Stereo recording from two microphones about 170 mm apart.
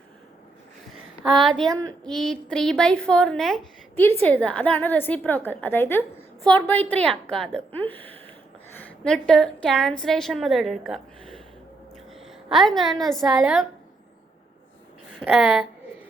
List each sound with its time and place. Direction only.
1.4 s a woman's voice: centre (ahead or behind)
1.7 s speech: 20° right (ahead or behind)
2.0 s a woman's voice: 5° left (ahead or behind)
15.2 s a woman's voice: 5° right (ahead or behind)